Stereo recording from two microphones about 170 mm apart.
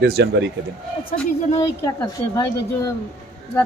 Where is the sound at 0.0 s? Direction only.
80° right.